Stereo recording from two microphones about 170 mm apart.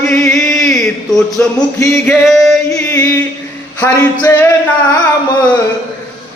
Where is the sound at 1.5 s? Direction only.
15° left (ahead or behind).